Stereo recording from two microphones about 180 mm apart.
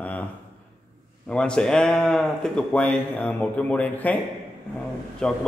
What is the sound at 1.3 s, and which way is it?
A man's voice, 5° left (ahead or behind).